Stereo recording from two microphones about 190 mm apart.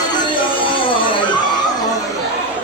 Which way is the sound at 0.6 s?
25° left (ahead or behind).